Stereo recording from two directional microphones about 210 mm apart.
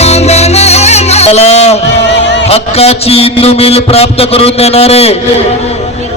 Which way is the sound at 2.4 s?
30° left (ahead or behind).